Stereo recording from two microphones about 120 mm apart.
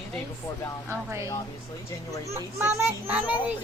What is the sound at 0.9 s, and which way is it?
Speech, 20° right (ahead or behind).